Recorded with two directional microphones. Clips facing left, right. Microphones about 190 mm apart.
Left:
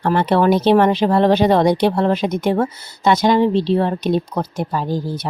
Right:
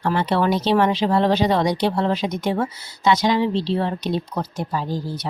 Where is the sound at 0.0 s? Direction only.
50° left (ahead or behind).